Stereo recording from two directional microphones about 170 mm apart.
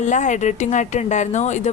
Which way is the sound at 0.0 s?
45° left (ahead or behind).